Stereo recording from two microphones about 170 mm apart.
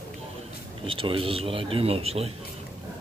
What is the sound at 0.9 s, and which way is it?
Speech, 30° right (ahead or behind).